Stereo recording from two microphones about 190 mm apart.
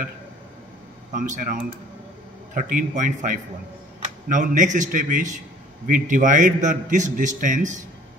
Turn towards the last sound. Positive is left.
turn(degrees=-40)  # may be behind; listen again after turning